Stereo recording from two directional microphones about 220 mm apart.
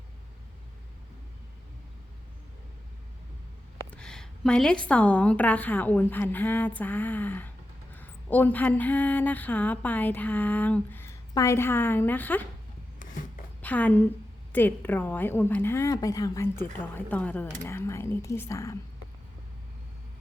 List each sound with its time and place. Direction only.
3.9 s speech: 5° left (ahead or behind)
13.6 s a woman's voice: 5° left (ahead or behind)